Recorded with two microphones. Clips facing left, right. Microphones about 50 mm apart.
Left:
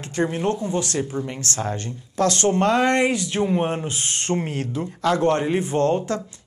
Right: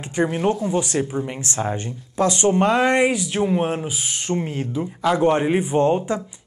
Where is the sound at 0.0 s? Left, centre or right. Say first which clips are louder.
Right 2 dB; centre.